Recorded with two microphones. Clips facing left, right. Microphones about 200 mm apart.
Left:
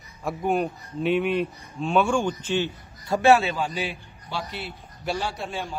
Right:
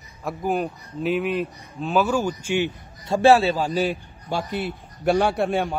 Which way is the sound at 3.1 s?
30° right (ahead or behind).